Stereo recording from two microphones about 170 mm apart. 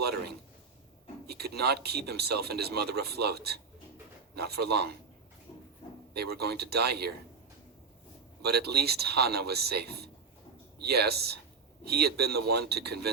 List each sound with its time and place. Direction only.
0.0 s speech: 70° right (ahead or behind)
6.1 s speech: 70° right (ahead or behind)
8.4 s speech: 70° right (ahead or behind)